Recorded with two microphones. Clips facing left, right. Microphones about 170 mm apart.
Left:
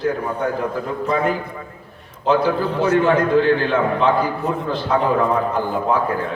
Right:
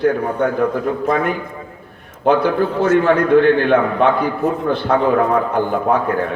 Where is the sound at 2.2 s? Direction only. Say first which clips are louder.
Right 3 dB; 60° right (ahead or behind).